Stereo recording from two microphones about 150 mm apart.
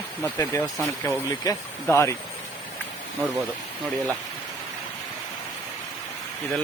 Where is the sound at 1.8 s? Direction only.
15° left (ahead or behind).